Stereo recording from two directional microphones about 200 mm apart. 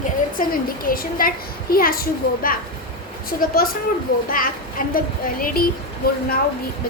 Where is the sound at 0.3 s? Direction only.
45° left (ahead or behind).